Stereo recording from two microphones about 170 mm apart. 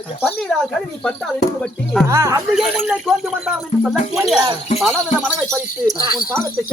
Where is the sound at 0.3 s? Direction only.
5° left (ahead or behind).